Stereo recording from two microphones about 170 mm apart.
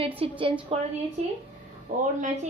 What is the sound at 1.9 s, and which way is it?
Speech, 50° right (ahead or behind).